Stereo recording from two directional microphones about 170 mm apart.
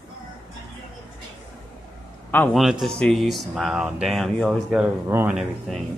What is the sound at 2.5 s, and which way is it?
Speech, centre (ahead or behind).